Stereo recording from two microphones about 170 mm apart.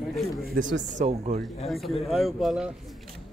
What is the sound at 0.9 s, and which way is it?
Speech, 45° right (ahead or behind).